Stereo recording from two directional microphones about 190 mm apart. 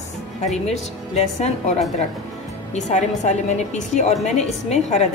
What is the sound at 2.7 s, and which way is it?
A woman's voice, 40° left (ahead or behind).